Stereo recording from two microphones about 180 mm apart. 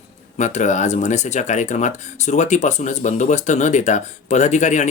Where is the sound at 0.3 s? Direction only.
40° left (ahead or behind).